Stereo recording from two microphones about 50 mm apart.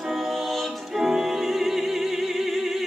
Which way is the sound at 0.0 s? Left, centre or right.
Centre.